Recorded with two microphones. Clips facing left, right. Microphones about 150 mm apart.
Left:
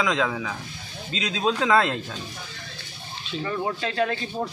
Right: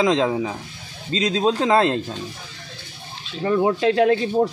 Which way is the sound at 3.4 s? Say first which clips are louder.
Right 10 dB; 60° right (ahead or behind).